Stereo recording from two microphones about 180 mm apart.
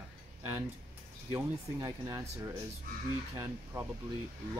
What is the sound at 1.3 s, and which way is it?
Speech, 15° right (ahead or behind).